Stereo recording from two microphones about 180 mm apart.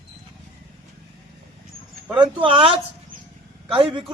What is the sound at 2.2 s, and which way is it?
Speech, 30° right (ahead or behind).